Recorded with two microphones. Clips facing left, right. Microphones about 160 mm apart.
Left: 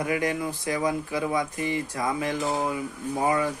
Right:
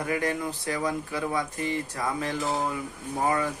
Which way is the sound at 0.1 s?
15° left (ahead or behind).